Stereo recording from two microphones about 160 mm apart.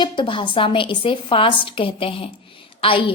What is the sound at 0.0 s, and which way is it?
A woman's voice, 30° left (ahead or behind).